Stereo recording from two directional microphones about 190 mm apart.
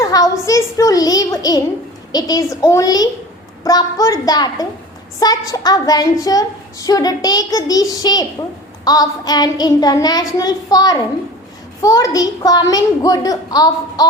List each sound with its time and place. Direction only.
0.0 s a child's voice: 20° left (ahead or behind)